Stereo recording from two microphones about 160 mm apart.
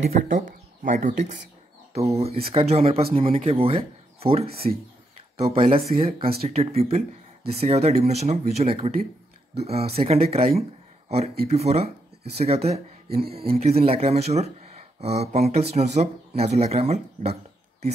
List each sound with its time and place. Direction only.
0.0 s speech: 55° right (ahead or behind)